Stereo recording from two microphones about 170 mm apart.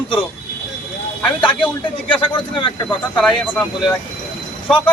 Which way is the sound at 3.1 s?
5° left (ahead or behind).